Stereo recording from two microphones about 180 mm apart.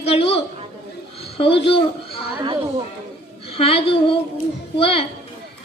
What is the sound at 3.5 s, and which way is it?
Speech, 30° left (ahead or behind).